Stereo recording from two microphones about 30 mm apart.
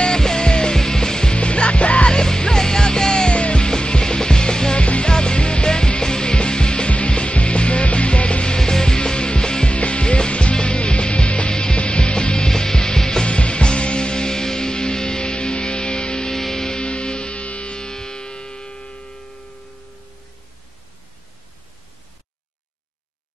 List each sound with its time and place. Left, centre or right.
0.1 s music: left
1.3 s music: left
2.0 s music: left
3.3 s music: left
4.7 s music: left
8.5 s music: left
9.8 s music: left
12.4 s music: centre
13.2 s music: left
16.3 s music: centre
16.7 s music: left
17.7 s music: left